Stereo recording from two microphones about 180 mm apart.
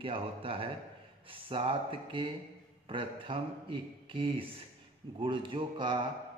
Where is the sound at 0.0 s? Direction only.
30° right (ahead or behind).